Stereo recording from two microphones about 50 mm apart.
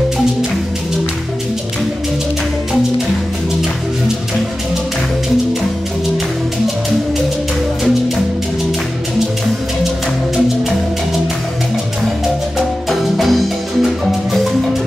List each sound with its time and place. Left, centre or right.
12.5 s marimba: centre
13.8 s music: centre